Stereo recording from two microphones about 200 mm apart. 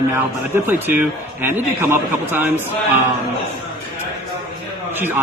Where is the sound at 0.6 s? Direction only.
10° right (ahead or behind).